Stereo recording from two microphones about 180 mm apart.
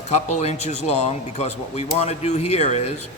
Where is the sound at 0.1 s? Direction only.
40° left (ahead or behind).